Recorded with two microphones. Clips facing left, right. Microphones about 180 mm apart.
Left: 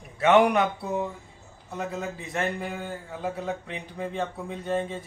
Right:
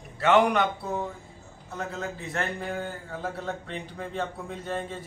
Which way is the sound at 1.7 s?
15° left (ahead or behind).